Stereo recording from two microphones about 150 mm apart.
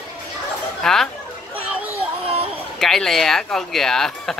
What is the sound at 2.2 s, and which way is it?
Chatter, 35° right (ahead or behind).